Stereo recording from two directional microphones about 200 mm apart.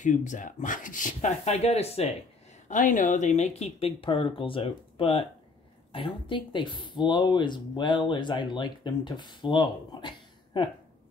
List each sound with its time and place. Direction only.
0.0 s speech: 40° left (ahead or behind); by 10.7 s 25° left (ahead or behind)